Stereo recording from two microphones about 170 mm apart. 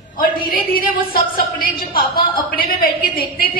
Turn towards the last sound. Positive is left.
turn(degrees=60)  # may be behind; listen again after turning